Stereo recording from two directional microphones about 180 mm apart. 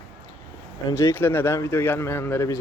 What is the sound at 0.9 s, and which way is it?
Speech, 15° left (ahead or behind).